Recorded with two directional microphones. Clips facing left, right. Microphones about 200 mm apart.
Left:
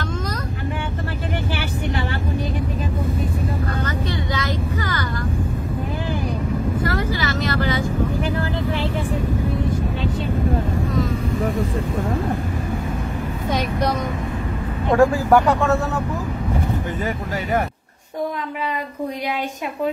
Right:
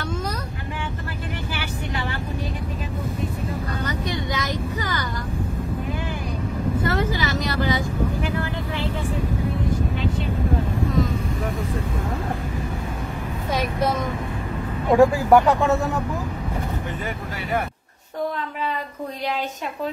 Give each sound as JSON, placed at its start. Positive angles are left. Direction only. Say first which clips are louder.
{"t": 3.8, "sound": "vehicle", "louder": "left 2 dB", "side_deg": -20}
{"t": 6.8, "sound": "vehicle", "louder": "left 1 dB", "side_deg": -20}
{"t": 13.5, "sound": "vehicle", "louder": "left 1 dB", "side_deg": -5}
{"t": 14.9, "sound": "speech", "louder": "even", "side_deg": -10}